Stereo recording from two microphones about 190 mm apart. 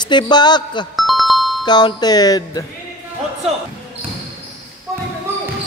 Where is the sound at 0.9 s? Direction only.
Centre (ahead or behind).